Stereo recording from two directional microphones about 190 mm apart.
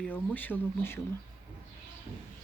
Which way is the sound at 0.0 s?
10° left (ahead or behind).